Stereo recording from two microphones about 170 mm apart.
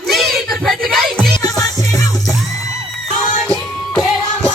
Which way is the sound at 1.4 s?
20° left (ahead or behind).